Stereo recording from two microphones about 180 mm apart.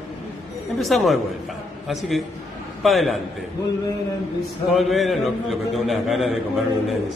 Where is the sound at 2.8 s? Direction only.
Centre (ahead or behind).